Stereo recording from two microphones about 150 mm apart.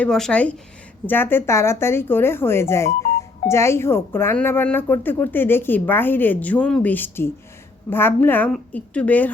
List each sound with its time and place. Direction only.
0.0 s speech: 5° left (ahead or behind)